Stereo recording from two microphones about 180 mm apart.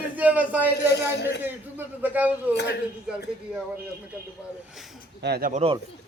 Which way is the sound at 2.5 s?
70° left (ahead or behind).